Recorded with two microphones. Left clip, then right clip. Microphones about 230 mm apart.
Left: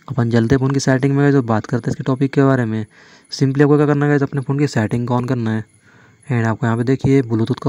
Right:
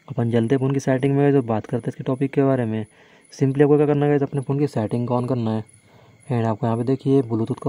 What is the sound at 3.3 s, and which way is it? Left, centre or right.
A man's voice, centre.